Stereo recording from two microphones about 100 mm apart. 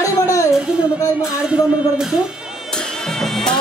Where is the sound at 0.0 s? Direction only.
30° left (ahead or behind).